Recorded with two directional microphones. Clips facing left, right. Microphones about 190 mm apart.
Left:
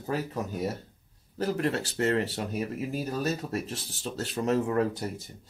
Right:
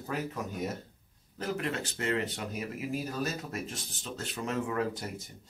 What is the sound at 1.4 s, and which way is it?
Speech, 40° left (ahead or behind).